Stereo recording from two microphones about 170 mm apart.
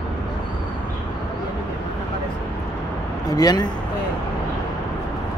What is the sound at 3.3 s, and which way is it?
Speech, 20° left (ahead or behind).